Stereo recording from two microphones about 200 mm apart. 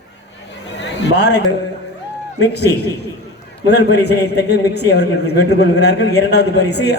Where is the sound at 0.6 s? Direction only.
60° left (ahead or behind).